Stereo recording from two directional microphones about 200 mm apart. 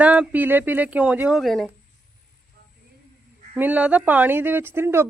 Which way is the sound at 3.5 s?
10° right (ahead or behind).